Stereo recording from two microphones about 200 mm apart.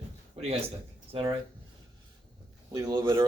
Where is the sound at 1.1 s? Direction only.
30° right (ahead or behind).